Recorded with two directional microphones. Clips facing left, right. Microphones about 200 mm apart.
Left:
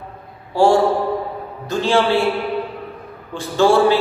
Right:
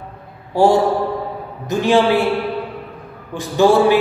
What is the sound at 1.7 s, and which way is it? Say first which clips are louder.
Speech: right 2 dB; 15° right (ahead or behind).